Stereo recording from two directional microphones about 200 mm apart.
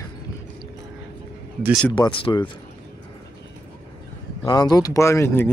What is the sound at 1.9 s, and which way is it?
Speech, 25° left (ahead or behind).